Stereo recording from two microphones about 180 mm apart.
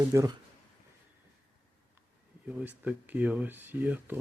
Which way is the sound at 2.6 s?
10° right (ahead or behind).